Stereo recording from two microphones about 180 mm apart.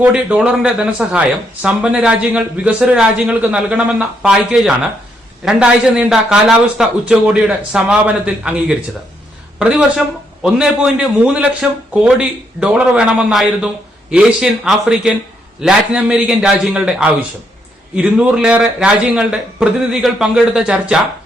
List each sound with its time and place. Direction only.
0.0 s a man's voice: 5° right (ahead or behind)